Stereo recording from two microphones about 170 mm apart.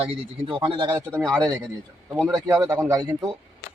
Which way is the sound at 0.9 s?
10° right (ahead or behind).